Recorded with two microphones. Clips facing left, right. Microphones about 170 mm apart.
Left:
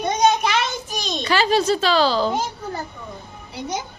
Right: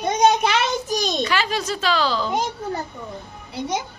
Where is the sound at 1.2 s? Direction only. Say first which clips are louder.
Left 4 dB; 30° left (ahead or behind).